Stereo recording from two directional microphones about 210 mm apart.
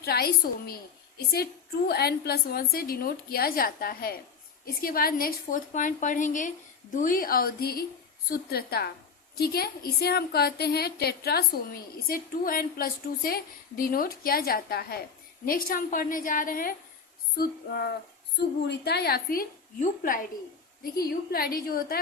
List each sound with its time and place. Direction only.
0.0 s a woman's voice: 50° left (ahead or behind)
1.9 s a woman's voice: 50° left (ahead or behind)